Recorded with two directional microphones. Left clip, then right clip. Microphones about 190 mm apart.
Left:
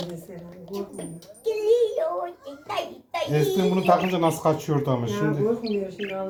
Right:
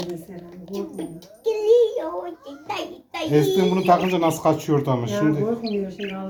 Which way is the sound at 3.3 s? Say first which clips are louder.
Right 5 dB; 25° right (ahead or behind).